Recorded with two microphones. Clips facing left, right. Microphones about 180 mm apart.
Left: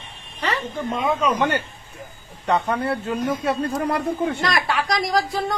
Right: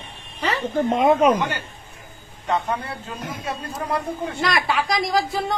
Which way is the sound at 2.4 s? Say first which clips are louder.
Left 3 dB; 65° left (ahead or behind).